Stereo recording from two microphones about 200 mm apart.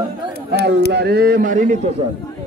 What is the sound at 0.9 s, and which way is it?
Speech, 50° right (ahead or behind).